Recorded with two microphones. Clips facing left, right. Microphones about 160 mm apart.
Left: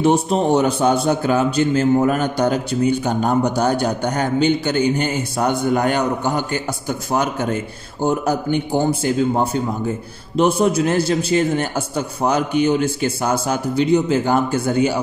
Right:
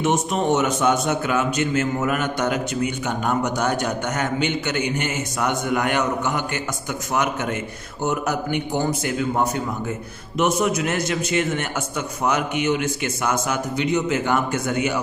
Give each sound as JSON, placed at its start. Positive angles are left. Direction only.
{"t": 0.0, "sound": "a man's voice", "side_deg": 35}